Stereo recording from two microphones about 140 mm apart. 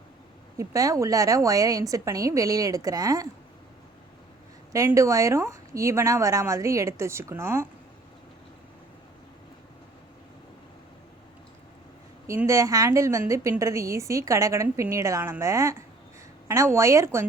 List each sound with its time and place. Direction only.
0.5 s a woman's voice: 25° right (ahead or behind)
4.7 s a woman's voice: 20° right (ahead or behind)
12.5 s a woman's voice: 20° right (ahead or behind)